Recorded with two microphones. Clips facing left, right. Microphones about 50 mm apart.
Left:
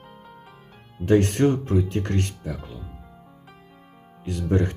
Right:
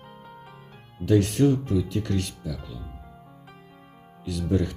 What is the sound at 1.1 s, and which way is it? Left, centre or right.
Speech, left.